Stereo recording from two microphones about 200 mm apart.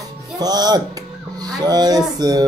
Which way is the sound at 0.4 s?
20° right (ahead or behind).